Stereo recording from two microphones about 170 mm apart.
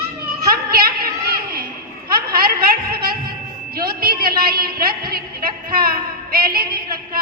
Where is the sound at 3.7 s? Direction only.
60° right (ahead or behind).